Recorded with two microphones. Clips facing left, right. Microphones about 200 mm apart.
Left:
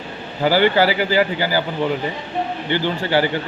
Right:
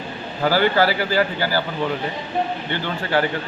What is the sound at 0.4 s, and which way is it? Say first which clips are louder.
Speech: left 2 dB; 10° left (ahead or behind).